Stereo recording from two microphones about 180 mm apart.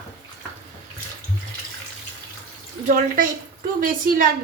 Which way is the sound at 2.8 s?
50° right (ahead or behind).